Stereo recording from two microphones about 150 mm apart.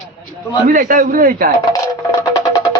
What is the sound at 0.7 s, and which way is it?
Speech, 65° right (ahead or behind).